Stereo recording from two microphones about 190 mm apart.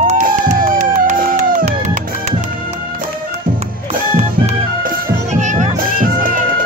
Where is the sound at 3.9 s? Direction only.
35° right (ahead or behind).